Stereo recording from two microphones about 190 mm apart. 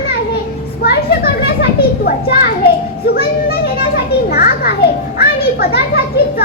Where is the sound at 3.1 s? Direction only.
55° left (ahead or behind).